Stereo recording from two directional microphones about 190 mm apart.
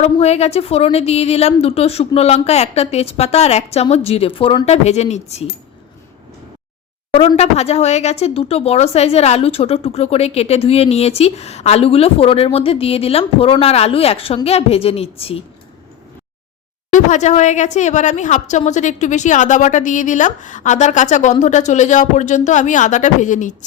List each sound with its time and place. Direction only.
0.0 s speech: 35° left (ahead or behind)
7.1 s speech: 30° left (ahead or behind)
16.9 s speech: 40° left (ahead or behind)